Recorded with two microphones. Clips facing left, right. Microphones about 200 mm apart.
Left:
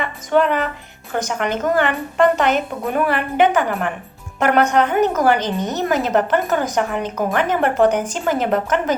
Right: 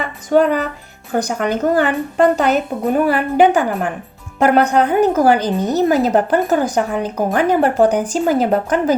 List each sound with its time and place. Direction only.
0.0 s music: 40° right (ahead or behind)
1.1 s a woman's voice: 40° right (ahead or behind)